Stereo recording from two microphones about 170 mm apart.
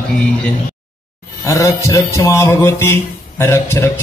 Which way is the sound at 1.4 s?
20° left (ahead or behind).